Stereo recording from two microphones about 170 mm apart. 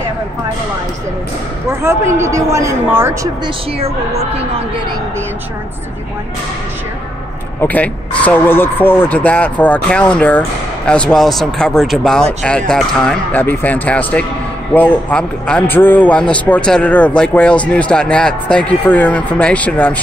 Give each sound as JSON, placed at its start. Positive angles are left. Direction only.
{"t": 1.7, "sound": "speech", "side_deg": -15}
{"t": 3.8, "sound": "speech", "side_deg": -35}
{"t": 7.6, "sound": "a man's voice", "side_deg": 10}